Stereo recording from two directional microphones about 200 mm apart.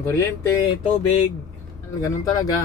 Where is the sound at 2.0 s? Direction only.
15° left (ahead or behind).